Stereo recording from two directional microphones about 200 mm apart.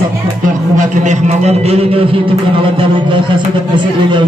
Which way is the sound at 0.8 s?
35° right (ahead or behind).